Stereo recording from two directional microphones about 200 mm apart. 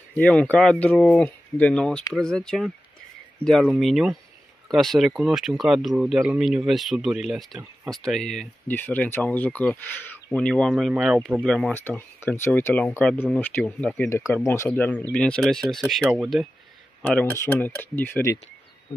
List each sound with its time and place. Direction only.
0.1 s speech: 5° left (ahead or behind)